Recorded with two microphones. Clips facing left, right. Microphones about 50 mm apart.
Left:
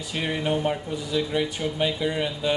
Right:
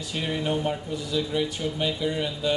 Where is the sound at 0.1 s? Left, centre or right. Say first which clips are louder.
Left 2 dB; left.